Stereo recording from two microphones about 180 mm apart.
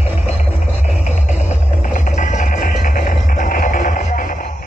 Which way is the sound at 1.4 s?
40° left (ahead or behind).